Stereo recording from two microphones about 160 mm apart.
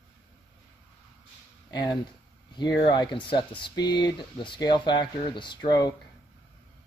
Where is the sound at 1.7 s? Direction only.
25° left (ahead or behind).